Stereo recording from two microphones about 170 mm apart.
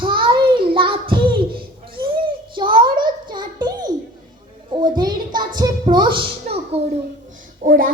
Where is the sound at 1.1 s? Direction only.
30° right (ahead or behind).